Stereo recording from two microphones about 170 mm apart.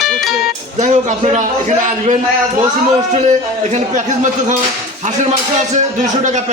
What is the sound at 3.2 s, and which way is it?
Speech, 45° right (ahead or behind).